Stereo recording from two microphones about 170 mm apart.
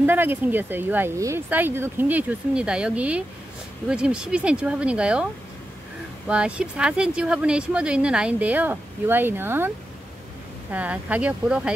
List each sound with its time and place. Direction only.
0.0 s speech: 10° right (ahead or behind)
10.7 s speech: 10° right (ahead or behind)